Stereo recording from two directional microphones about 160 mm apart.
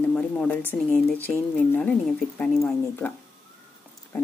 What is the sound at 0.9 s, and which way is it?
Speech, 10° left (ahead or behind).